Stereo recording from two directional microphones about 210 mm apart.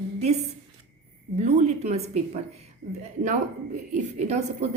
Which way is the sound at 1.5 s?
30° right (ahead or behind).